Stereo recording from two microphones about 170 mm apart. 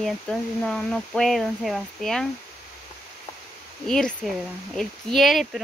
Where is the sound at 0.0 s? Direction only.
5° left (ahead or behind).